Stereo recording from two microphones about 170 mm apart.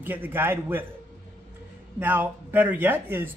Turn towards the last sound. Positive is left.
turn(degrees=-10)  # may be behind; listen again after turning